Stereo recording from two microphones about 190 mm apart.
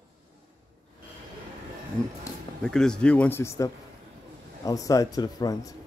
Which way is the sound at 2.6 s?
5° left (ahead or behind).